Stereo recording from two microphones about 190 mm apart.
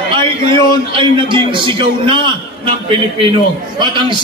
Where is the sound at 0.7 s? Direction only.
25° right (ahead or behind).